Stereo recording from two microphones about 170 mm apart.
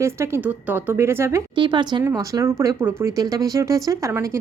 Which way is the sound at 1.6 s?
25° right (ahead or behind).